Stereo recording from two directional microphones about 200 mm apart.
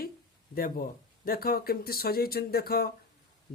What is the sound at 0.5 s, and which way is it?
Speech, 45° left (ahead or behind).